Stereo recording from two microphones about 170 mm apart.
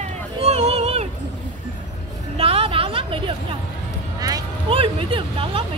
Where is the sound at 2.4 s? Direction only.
35° right (ahead or behind).